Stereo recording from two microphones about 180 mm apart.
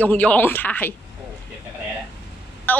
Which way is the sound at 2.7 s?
10° left (ahead or behind).